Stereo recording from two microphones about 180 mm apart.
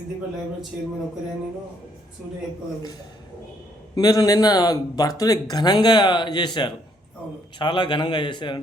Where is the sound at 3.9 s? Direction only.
20° left (ahead or behind).